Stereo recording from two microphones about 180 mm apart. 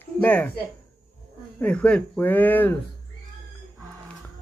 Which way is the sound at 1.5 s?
5° left (ahead or behind).